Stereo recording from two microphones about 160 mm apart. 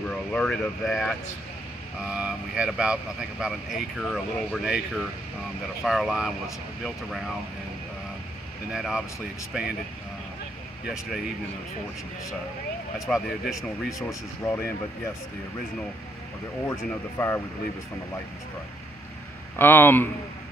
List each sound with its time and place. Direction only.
0.3 s speech: 5° left (ahead or behind)
8.7 s speech: 5° right (ahead or behind)
13.0 s speech: centre (ahead or behind)
13.9 s speech: 15° left (ahead or behind)
16.6 s speech: 15° left (ahead or behind)
19.6 s speech: 15° left (ahead or behind)